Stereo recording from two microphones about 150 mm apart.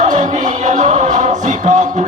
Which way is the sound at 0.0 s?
55° right (ahead or behind).